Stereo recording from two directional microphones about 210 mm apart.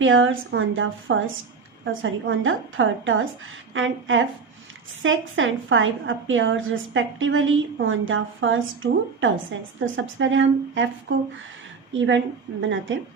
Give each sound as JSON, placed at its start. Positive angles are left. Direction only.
{"t": 0.0, "sound": "a woman's voice", "side_deg": -70}